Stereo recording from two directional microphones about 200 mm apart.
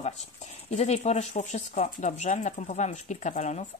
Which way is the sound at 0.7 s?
35° left (ahead or behind).